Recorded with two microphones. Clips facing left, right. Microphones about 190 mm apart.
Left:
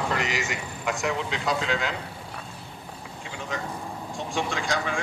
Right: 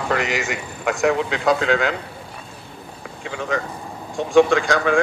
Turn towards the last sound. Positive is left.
turn(degrees=-65)  # may be behind; listen again after turning